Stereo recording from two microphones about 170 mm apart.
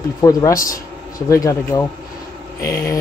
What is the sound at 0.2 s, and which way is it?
Speech, 20° left (ahead or behind).